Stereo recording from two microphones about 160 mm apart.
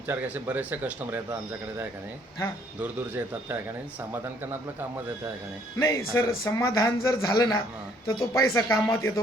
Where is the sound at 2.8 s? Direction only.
10° right (ahead or behind).